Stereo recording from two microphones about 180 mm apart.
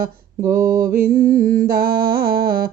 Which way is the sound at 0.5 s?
50° right (ahead or behind).